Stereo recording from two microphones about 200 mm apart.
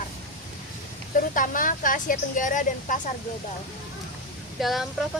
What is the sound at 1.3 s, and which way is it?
Speech, 40° left (ahead or behind).